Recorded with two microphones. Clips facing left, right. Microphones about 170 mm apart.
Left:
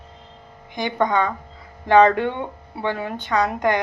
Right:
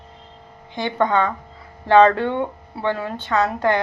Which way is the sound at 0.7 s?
15° left (ahead or behind).